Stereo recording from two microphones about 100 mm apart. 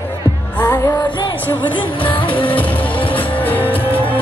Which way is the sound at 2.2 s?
60° left (ahead or behind).